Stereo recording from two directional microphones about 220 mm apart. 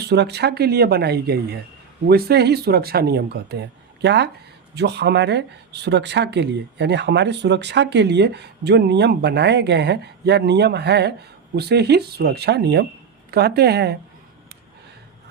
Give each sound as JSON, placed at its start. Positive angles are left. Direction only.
{"t": 0.0, "sound": "speech", "side_deg": -50}